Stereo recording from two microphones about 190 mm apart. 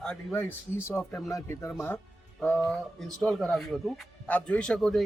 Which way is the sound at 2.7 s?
5° left (ahead or behind).